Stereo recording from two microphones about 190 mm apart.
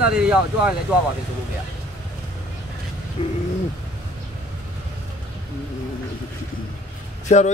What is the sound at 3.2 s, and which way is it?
Speech, 30° left (ahead or behind).